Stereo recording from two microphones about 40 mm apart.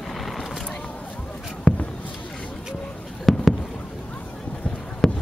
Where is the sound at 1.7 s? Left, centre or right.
Centre.